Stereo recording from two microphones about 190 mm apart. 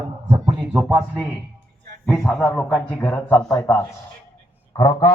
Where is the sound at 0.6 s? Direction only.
5° right (ahead or behind).